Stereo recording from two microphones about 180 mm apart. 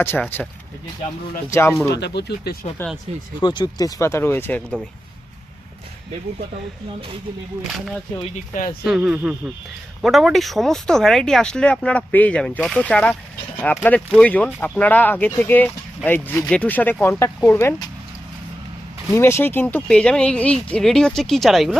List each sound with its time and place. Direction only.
0.0 s speech: 10° left (ahead or behind)
1.5 s speech: 15° left (ahead or behind)
1.9 s speech: 70° left (ahead or behind)
2.8 s speech: 15° left (ahead or behind)
3.4 s speech: 25° left (ahead or behind)
8.8 s speech: 5° right (ahead or behind); by 17.8 s 15° left (ahead or behind)
19.1 s speech: 15° left (ahead or behind)